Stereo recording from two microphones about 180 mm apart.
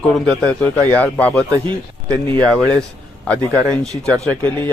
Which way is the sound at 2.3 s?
5° left (ahead or behind).